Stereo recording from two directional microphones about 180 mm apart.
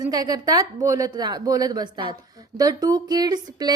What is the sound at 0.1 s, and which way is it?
Speech, 20° right (ahead or behind).